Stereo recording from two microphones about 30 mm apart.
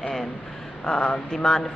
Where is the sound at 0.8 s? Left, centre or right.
Left.